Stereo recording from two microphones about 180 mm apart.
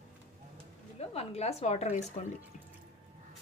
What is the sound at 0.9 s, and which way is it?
A woman's voice, 35° left (ahead or behind).